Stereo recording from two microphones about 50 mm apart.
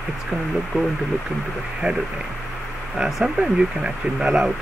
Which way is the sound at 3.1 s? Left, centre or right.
Centre.